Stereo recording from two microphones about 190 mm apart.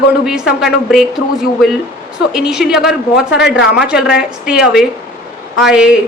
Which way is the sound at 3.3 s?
65° left (ahead or behind).